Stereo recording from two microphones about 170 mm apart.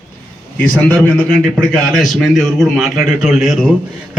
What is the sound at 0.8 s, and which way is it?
A man's voice, 10° left (ahead or behind).